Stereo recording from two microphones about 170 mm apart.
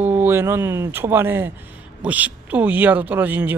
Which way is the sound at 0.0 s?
10° right (ahead or behind).